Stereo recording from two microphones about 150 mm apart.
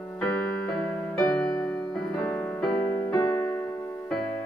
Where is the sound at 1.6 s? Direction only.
5° left (ahead or behind).